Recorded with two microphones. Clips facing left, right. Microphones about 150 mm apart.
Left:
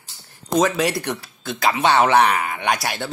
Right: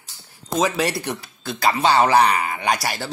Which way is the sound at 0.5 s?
Centre (ahead or behind).